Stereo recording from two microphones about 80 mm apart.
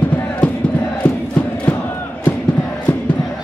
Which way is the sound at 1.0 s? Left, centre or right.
Left.